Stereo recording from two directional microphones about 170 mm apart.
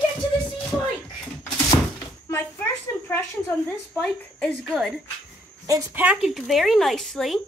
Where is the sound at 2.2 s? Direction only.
15° left (ahead or behind); by 5.0 s centre (ahead or behind).